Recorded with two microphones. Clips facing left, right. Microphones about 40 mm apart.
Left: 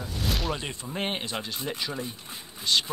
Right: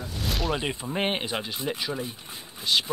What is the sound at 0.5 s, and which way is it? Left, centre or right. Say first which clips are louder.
Speech: right 5 dB; centre.